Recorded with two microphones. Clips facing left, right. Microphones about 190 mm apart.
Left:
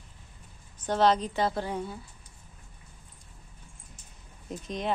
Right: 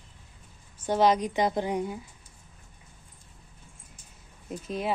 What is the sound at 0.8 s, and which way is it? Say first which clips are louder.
A woman's voice: right 1 dB; 10° right (ahead or behind).